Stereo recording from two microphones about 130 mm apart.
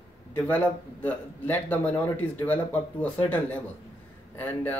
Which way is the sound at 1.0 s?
15° left (ahead or behind).